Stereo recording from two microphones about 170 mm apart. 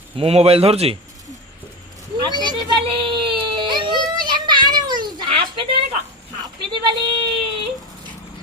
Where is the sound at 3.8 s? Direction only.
25° right (ahead or behind).